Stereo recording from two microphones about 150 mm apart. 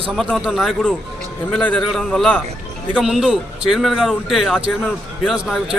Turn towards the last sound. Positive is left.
turn(degrees=-5)  # may be behind; listen again after turning